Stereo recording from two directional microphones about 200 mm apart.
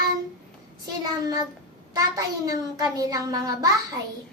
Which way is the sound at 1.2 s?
20° right (ahead or behind).